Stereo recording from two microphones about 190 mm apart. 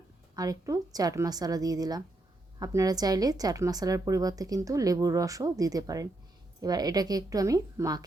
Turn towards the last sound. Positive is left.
turn(degrees=-15)  # may be behind; listen again after turning